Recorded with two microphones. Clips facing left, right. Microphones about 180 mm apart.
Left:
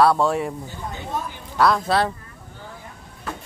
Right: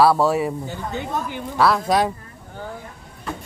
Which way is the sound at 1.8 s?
15° right (ahead or behind).